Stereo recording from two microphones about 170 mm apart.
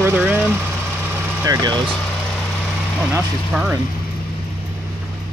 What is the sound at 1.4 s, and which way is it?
Speech, 20° right (ahead or behind).